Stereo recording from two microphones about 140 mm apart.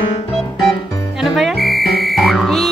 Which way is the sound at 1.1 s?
Centre (ahead or behind).